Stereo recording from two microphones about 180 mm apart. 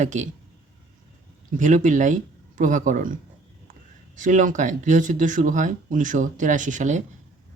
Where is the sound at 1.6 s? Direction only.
45° right (ahead or behind).